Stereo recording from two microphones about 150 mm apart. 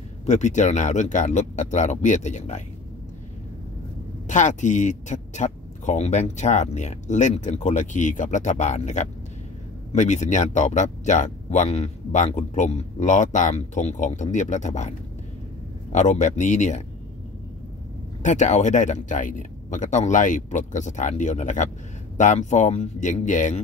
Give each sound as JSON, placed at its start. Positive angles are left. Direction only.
{"t": 0.3, "sound": "speech", "side_deg": 50}
{"t": 4.3, "sound": "speech", "side_deg": 55}
{"t": 18.2, "sound": "speech", "side_deg": 55}